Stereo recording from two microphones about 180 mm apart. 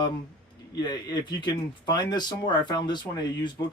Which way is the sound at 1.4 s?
25° left (ahead or behind).